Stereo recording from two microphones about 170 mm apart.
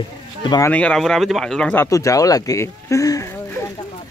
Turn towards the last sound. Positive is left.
turn(degrees=20)  # may be behind; listen again after turning